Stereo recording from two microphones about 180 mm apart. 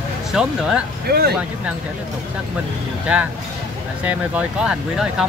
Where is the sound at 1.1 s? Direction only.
60° right (ahead or behind).